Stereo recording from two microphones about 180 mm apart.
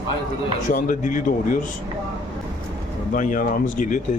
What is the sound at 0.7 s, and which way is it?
Speech, 45° left (ahead or behind).